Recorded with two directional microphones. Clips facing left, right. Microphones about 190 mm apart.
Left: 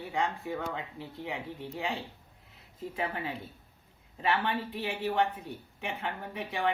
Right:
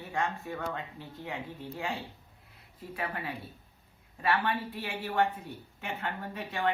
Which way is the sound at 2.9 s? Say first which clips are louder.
Left 1 dB; 25° left (ahead or behind).